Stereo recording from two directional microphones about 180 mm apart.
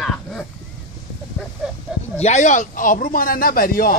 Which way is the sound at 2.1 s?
40° left (ahead or behind).